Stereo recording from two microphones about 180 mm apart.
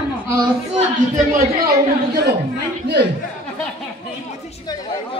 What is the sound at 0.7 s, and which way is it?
Speech, 50° right (ahead or behind).